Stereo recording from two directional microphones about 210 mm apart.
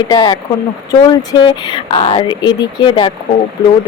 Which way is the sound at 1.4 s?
20° left (ahead or behind).